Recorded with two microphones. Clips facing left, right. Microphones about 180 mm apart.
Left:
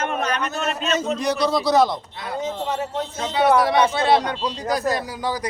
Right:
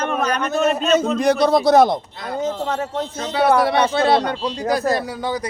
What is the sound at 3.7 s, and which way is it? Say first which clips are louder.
Speech: right 1 dB; 55° right (ahead or behind).